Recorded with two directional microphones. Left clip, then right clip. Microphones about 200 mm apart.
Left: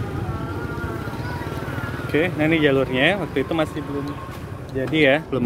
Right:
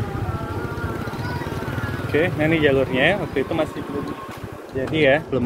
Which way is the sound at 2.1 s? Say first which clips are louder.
Even; 15° left (ahead or behind).